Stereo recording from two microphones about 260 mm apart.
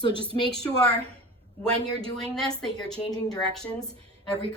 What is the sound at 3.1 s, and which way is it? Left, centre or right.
Speech, centre.